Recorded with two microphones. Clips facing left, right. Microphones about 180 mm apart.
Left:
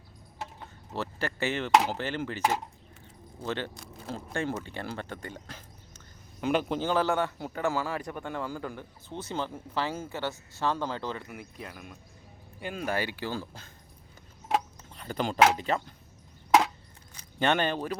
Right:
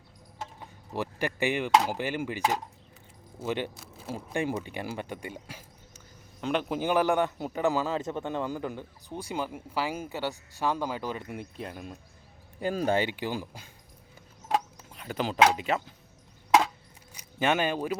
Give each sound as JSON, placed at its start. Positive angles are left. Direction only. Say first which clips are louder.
{"t": 0.6, "sound": "a man's voice", "louder": "right 2 dB", "side_deg": -15}
{"t": 3.4, "sound": "a man's voice", "louder": "right 2 dB", "side_deg": -10}
{"t": 6.4, "sound": "speech", "louder": "left 2 dB", "side_deg": 5}
{"t": 6.7, "sound": "a man's voice", "louder": "right 2 dB", "side_deg": -15}
{"t": 11.3, "sound": "speech", "louder": "right 4 dB", "side_deg": -25}
{"t": 12.6, "sound": "speech", "louder": "right 7 dB", "side_deg": -40}
{"t": 12.9, "sound": "a man's voice", "louder": "even", "side_deg": -20}
{"t": 14.9, "sound": "speech", "louder": "even", "side_deg": -5}
{"t": 17.2, "sound": "speech", "louder": "even", "side_deg": -5}